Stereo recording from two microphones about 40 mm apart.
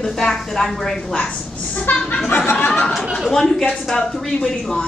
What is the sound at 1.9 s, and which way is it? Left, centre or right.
Speech, left.